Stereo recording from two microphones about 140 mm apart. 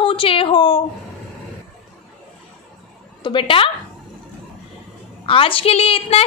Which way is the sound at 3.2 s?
35° left (ahead or behind).